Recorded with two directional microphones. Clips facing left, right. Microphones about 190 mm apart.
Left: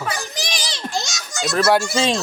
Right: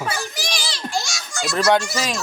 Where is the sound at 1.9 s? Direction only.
25° left (ahead or behind).